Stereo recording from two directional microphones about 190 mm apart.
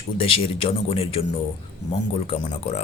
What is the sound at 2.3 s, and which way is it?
Speech, 35° left (ahead or behind).